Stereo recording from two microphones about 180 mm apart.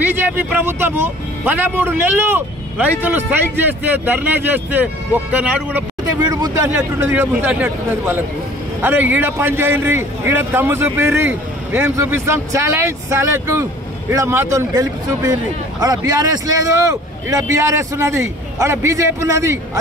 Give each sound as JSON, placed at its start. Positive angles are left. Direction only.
{"t": 0.0, "sound": "a man's voice", "side_deg": -10}